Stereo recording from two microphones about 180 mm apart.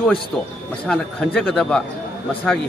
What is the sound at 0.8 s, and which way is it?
Speech, 5° left (ahead or behind).